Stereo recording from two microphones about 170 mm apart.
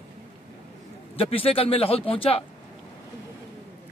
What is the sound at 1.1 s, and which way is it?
Speech, 35° left (ahead or behind).